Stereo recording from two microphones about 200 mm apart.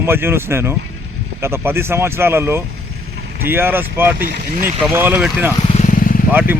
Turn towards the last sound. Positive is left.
turn(degrees=45)  # may be behind; listen again after turning